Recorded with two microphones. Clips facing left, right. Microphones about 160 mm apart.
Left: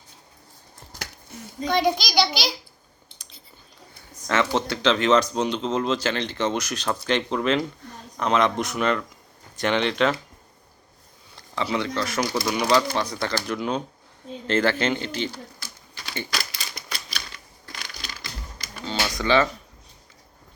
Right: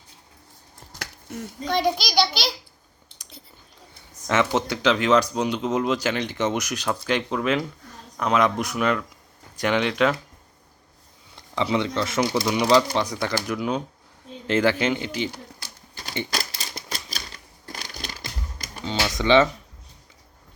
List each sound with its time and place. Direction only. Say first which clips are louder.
1.6 s a child's voice: left 1 dB; 5° right (ahead or behind)
4.3 s speech: right 1 dB; 15° right (ahead or behind)
11.3 s speech: right 3 dB; 20° right (ahead or behind)
16.3 s typewriter: right 2 dB; 40° right (ahead or behind)
17.9 s typewriter: right 3 dB; 50° right (ahead or behind)
18.9 s computer keyboard: right 3 dB; 20° right (ahead or behind)